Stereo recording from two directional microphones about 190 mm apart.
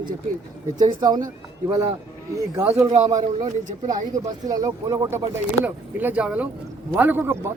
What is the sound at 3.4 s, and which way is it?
Speech, 40° right (ahead or behind).